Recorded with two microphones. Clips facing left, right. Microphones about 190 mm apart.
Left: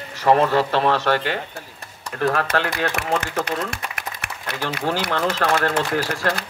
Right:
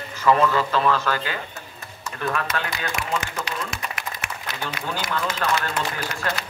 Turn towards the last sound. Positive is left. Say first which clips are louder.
# left 6 dB
turn(degrees=70)  # may be behind; listen again after turning